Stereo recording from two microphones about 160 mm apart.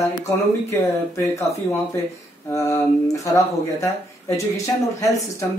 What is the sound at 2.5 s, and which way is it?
Speech, 15° left (ahead or behind).